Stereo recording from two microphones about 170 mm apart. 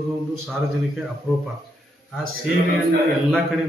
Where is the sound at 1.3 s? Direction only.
Centre (ahead or behind).